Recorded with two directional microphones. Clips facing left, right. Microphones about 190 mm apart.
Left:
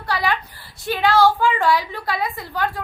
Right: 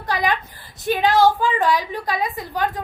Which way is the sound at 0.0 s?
20° right (ahead or behind).